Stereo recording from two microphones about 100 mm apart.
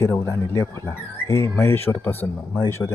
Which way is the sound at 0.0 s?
30° left (ahead or behind).